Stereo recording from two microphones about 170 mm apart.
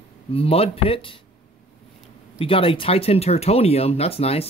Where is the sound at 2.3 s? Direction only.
30° left (ahead or behind).